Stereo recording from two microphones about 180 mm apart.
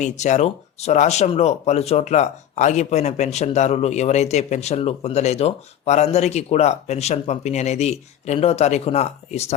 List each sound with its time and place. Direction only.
0.0 s speech: 40° left (ahead or behind)